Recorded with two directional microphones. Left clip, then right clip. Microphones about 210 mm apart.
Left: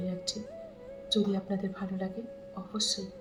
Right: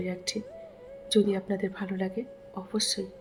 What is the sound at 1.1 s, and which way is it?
A woman's voice, 35° right (ahead or behind).